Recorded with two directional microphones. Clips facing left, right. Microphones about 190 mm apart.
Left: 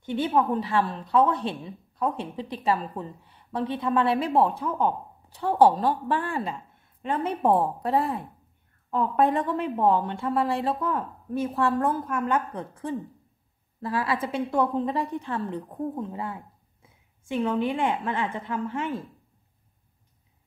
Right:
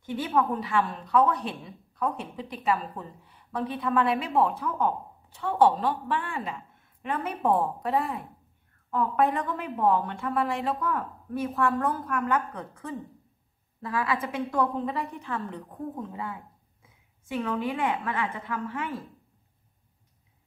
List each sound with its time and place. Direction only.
0.0 s speech: 25° left (ahead or behind)
17.3 s speech: 25° left (ahead or behind)